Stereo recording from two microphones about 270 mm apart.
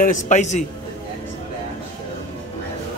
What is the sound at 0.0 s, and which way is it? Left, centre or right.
Speech, left.